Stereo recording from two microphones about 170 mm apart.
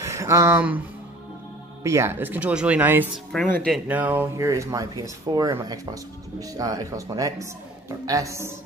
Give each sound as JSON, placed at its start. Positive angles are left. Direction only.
{"t": 0.0, "sound": "speech", "side_deg": -15}
{"t": 3.3, "sound": "speech", "side_deg": 5}
{"t": 3.8, "sound": "speech", "side_deg": -10}